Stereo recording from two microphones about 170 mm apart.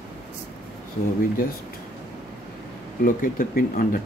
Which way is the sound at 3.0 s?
55° left (ahead or behind).